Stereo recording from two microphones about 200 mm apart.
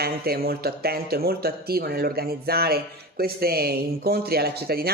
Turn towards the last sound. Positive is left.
turn(degrees=-50)  # may be behind; listen again after turning